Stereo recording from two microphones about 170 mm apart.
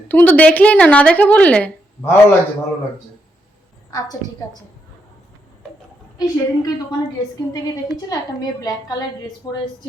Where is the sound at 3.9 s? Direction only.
20° left (ahead or behind).